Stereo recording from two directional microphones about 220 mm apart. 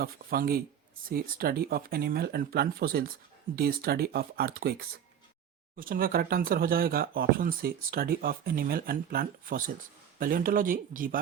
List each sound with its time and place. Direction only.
0.0 s speech: 45° right (ahead or behind)
5.7 s speech: 40° right (ahead or behind)